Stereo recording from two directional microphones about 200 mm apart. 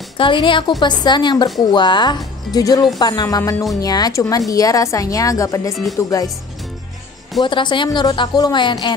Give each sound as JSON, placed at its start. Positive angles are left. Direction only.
{"t": 0.2, "sound": "a woman's voice", "side_deg": 25}
{"t": 7.4, "sound": "a woman's voice", "side_deg": 25}